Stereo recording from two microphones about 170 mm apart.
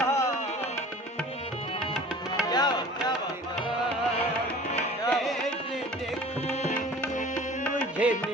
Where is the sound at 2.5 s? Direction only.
25° left (ahead or behind).